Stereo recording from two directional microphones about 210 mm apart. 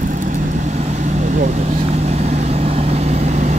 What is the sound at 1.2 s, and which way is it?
Vehicle, 35° right (ahead or behind).